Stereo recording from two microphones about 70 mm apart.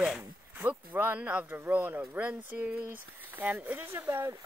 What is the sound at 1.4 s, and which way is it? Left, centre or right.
Speech, right.